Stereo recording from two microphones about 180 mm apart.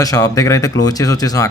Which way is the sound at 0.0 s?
20° left (ahead or behind).